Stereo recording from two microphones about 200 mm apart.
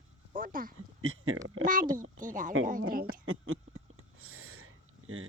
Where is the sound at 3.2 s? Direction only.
90° right.